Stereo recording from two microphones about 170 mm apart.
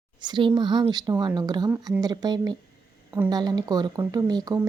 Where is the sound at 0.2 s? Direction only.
25° right (ahead or behind).